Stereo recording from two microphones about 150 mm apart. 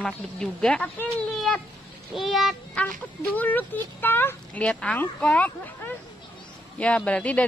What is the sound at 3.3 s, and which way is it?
Speech, 10° left (ahead or behind).